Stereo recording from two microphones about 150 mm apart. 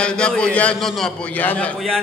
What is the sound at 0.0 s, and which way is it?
A man's voice, 5° left (ahead or behind).